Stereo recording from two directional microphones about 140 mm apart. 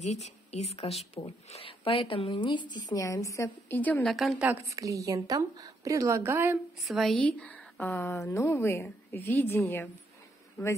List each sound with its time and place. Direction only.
0.0 s a woman's voice: 50° left (ahead or behind); by 4.0 s 15° left (ahead or behind)
4.0 s a woman's voice: centre (ahead or behind)
4.6 s a woman's voice: 25° right (ahead or behind)
6.8 s a woman's voice: centre (ahead or behind); by 9.8 s 15° left (ahead or behind)